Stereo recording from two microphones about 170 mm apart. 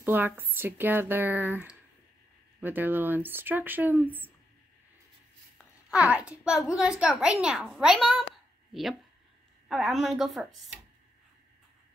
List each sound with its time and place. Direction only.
0.0 s speech: 10° right (ahead or behind)
5.9 s a child's voice: 10° right (ahead or behind)
9.7 s a child's voice: centre (ahead or behind)